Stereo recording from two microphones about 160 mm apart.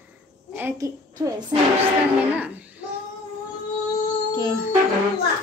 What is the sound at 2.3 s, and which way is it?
Speech, 10° right (ahead or behind).